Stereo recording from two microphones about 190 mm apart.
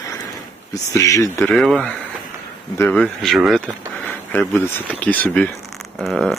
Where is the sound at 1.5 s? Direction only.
Centre (ahead or behind).